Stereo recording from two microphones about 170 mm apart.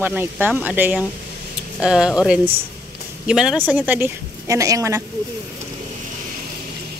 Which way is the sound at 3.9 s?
15° right (ahead or behind).